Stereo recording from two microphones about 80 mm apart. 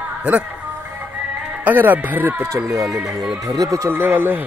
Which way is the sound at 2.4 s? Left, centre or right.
Right.